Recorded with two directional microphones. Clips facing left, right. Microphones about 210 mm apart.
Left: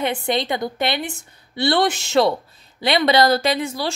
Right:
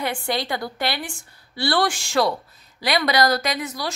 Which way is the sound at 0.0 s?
20° left (ahead or behind).